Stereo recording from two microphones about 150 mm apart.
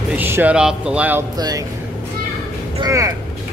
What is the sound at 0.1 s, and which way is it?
Speech, 10° right (ahead or behind).